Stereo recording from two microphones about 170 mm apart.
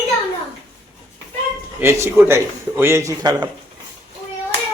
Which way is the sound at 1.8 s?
15° right (ahead or behind).